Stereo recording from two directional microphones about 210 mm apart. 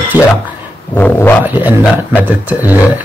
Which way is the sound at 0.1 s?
20° left (ahead or behind).